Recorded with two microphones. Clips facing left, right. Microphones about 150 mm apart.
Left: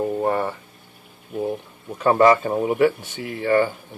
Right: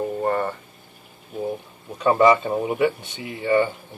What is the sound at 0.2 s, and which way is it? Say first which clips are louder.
Speech: left 1 dB; 5° left (ahead or behind).